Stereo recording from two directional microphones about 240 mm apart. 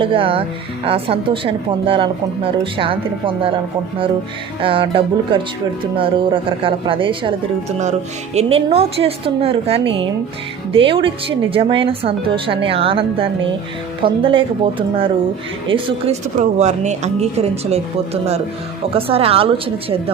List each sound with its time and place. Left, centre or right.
0.0 s speech: right
4.6 s speech: right